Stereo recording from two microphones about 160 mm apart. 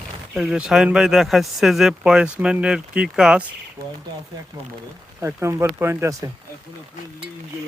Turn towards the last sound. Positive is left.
turn(degrees=-20)  # may be behind; listen again after turning